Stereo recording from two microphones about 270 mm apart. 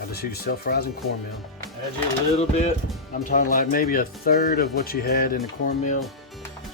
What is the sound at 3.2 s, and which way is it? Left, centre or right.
Speech, left.